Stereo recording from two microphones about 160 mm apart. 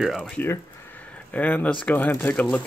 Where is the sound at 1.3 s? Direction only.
10° left (ahead or behind).